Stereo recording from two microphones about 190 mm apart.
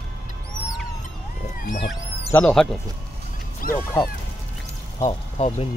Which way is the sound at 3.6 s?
50° left (ahead or behind).